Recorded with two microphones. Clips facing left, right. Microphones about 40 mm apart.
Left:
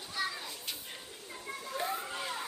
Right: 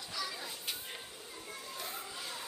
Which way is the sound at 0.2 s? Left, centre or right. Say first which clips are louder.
Left 6 dB; left.